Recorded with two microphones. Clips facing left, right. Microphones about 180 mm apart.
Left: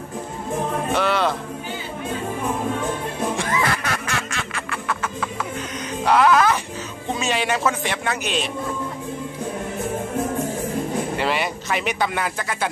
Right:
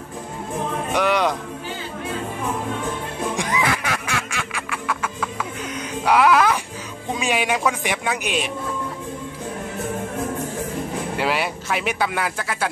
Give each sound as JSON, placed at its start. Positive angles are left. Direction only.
{"t": 0.9, "sound": "music", "side_deg": -15}
{"t": 3.3, "sound": "music", "side_deg": -15}
{"t": 3.9, "sound": "duck", "side_deg": -10}
{"t": 6.0, "sound": "music", "side_deg": -10}
{"t": 7.1, "sound": "speech", "side_deg": -10}
{"t": 11.1, "sound": "speech", "side_deg": -5}